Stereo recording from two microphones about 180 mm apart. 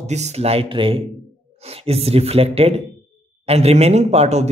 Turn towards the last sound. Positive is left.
turn(degrees=-35)  # may be behind; listen again after turning